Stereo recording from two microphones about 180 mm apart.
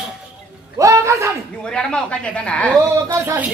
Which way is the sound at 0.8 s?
15° right (ahead or behind).